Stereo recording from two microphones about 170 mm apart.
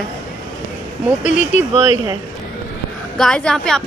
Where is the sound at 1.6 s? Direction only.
15° right (ahead or behind).